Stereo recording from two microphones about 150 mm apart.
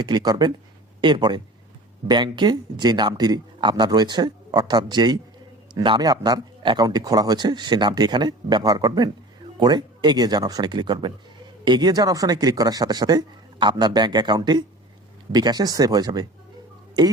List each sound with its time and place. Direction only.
0.0 s a man's voice: 25° right (ahead or behind)